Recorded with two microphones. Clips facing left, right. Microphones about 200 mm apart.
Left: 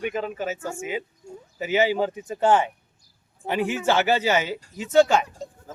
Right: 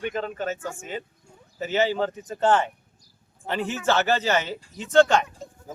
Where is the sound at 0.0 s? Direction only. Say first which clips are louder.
Left 1 dB; 5° left (ahead or behind).